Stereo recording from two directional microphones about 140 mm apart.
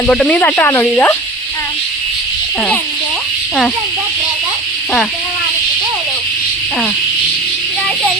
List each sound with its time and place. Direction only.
0.1 s speech: 10° left (ahead or behind)